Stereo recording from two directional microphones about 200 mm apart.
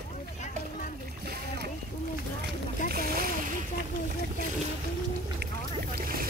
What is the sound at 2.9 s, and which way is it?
Splash, 50° right (ahead or behind).